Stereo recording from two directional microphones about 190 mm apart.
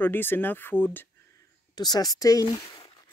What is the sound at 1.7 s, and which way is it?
A woman's voice, 20° left (ahead or behind).